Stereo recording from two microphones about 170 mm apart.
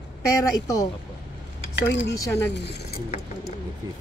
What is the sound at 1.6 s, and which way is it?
Speech, 90° left.